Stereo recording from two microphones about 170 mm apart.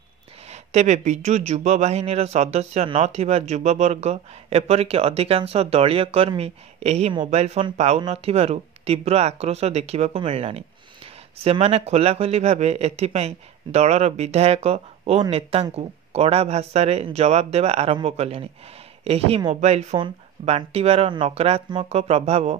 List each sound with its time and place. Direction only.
0.5 s speech: 40° right (ahead or behind)